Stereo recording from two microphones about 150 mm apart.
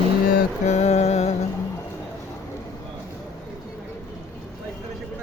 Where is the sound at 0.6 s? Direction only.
50° left (ahead or behind).